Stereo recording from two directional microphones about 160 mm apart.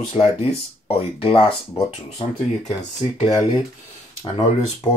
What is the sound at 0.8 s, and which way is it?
Speech, 35° left (ahead or behind).